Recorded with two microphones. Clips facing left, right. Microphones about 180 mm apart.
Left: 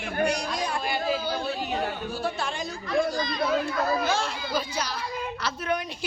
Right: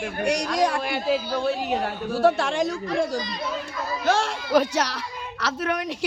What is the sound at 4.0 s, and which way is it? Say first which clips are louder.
A child's voice: right 4 dB; 75° right (ahead or behind).